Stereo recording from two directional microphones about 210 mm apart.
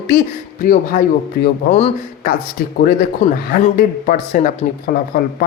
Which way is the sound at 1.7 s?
30° left (ahead or behind).